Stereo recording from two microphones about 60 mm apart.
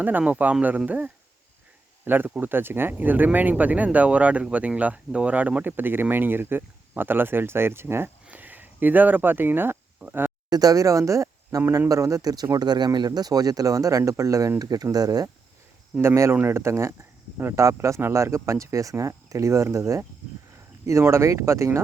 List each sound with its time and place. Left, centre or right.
0.0 s speech: right
8.3 s speech: right
10.5 s speech: right
14.6 s speech: right
16.0 s speech: right
16.3 s speech: right
16.6 s speech: right